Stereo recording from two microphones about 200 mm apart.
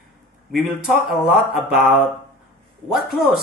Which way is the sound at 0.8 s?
Centre (ahead or behind).